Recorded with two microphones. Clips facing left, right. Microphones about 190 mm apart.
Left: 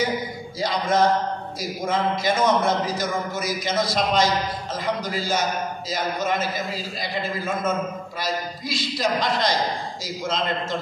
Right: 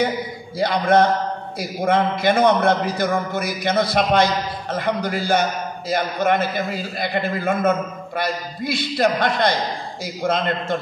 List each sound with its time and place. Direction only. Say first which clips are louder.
0.6 s a man's voice: right 5 dB; 60° right (ahead or behind)